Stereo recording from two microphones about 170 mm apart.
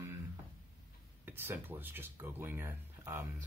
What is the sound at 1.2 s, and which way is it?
Speech, 10° right (ahead or behind).